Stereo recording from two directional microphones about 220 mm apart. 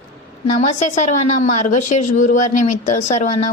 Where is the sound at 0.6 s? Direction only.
30° left (ahead or behind).